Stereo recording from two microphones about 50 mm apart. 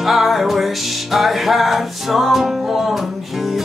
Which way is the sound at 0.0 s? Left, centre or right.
Centre.